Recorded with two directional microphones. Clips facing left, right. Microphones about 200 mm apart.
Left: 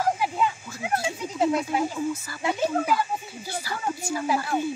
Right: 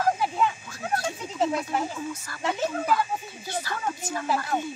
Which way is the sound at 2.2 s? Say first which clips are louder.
Left 2 dB; 5° left (ahead or behind).